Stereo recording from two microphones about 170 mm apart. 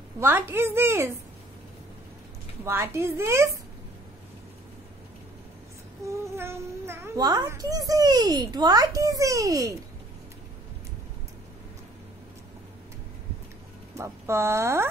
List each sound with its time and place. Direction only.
0.2 s a woman's voice: 15° right (ahead or behind)
2.6 s a woman's voice: 15° right (ahead or behind)
6.0 s a child's voice: 15° right (ahead or behind)
13.9 s speech: 15° right (ahead or behind)